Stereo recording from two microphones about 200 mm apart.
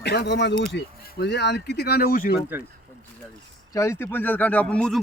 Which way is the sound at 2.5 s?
10° right (ahead or behind).